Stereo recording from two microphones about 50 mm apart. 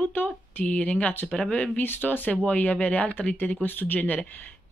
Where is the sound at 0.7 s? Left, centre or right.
Left.